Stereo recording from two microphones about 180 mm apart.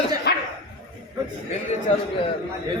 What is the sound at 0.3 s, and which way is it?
Dog, 65° left (ahead or behind).